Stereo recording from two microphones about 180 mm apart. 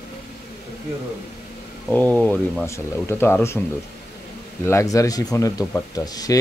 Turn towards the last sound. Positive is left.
turn(degrees=20)  # may be behind; listen again after turning